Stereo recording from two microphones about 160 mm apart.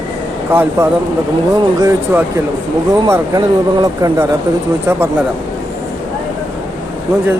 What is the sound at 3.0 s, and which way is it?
Speech, 25° right (ahead or behind).